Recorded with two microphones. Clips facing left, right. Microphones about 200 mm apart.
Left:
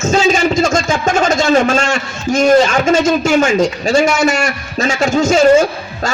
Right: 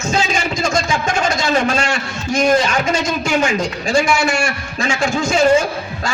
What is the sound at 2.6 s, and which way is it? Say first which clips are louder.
A man's voice: left 6 dB; 45° left (ahead or behind).